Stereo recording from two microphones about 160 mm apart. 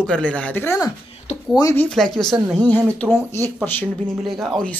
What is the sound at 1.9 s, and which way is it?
Speech, 5° left (ahead or behind).